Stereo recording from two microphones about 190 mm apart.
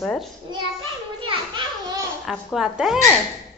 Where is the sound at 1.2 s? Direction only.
25° right (ahead or behind).